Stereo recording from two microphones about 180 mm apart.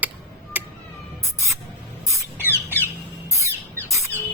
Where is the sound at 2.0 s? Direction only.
15° right (ahead or behind).